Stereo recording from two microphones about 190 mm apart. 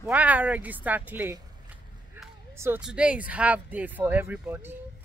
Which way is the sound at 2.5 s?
15° right (ahead or behind).